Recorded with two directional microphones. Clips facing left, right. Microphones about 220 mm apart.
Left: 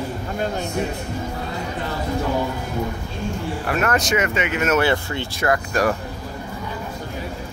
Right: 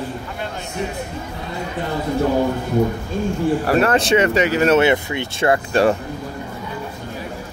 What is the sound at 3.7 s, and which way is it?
Speech, 30° right (ahead or behind).